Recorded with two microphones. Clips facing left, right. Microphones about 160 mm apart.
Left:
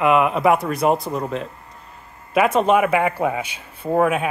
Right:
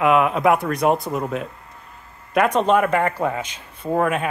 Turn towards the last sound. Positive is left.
turn(degrees=5)  # may be behind; listen again after turning